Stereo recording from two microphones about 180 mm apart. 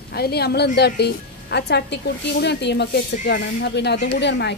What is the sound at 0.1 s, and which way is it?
A woman's voice, 60° left (ahead or behind).